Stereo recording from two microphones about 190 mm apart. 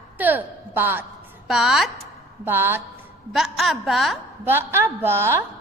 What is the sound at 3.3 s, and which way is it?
Speech, centre (ahead or behind).